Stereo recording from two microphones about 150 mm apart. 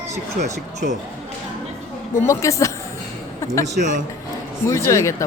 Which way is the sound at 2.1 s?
20° left (ahead or behind).